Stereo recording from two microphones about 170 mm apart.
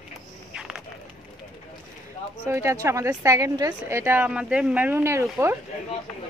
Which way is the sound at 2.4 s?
15° right (ahead or behind).